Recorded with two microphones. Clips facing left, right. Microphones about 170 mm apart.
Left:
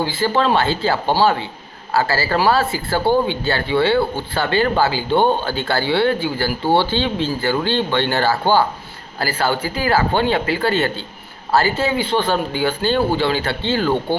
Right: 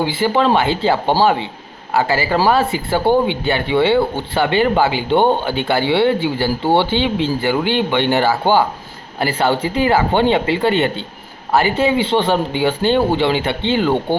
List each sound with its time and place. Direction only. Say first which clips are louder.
0.0 s speech: right 2 dB; 15° right (ahead or behind)